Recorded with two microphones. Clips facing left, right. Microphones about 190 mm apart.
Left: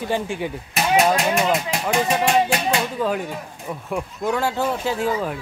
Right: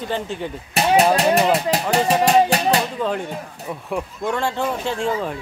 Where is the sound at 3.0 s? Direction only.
5° left (ahead or behind).